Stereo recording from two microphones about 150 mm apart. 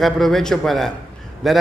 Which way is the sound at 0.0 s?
Centre (ahead or behind).